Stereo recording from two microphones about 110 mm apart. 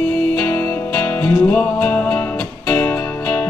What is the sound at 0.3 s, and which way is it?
Music, 15° left (ahead or behind).